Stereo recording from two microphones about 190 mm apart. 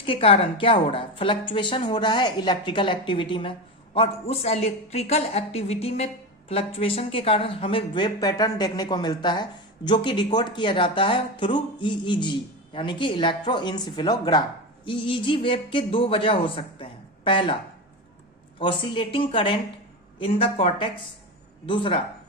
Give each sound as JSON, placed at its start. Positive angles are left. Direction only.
{"t": 0.0, "sound": "a woman's voice", "side_deg": 30}
{"t": 18.6, "sound": "speech", "side_deg": 25}